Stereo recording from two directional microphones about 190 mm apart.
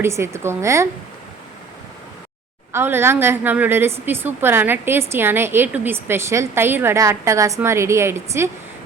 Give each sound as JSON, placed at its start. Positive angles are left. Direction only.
{"t": 0.0, "sound": "a woman's voice", "side_deg": -15}
{"t": 2.7, "sound": "a woman's voice", "side_deg": -10}